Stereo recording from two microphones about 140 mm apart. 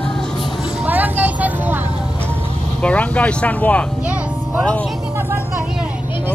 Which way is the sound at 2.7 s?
10° left (ahead or behind).